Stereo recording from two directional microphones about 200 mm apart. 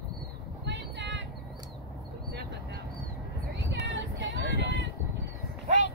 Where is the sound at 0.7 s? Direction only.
65° right (ahead or behind).